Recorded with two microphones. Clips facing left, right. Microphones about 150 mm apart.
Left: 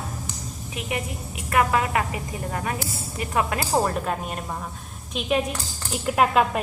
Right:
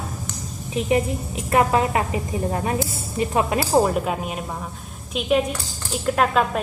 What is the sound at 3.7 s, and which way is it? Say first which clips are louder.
A woman's voice: right 4 dB; 10° right (ahead or behind).